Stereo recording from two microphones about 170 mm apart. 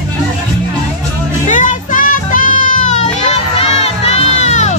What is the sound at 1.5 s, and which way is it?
Music, 50° left (ahead or behind).